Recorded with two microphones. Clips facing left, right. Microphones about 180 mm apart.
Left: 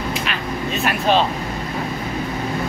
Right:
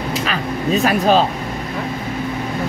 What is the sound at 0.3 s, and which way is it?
Speech, 40° right (ahead or behind).